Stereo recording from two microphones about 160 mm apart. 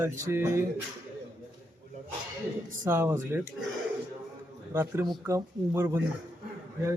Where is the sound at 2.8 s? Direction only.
15° right (ahead or behind).